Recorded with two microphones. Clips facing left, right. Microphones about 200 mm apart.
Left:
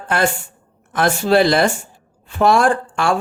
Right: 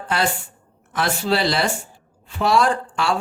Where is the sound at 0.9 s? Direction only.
50° left (ahead or behind).